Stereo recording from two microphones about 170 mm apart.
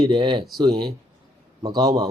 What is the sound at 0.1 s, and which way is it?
Speech, 30° right (ahead or behind).